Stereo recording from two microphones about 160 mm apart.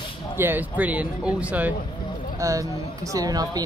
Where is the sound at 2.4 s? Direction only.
20° right (ahead or behind).